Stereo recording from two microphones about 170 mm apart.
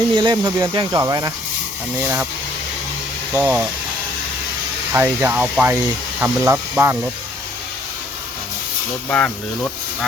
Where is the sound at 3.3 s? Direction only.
10° right (ahead or behind).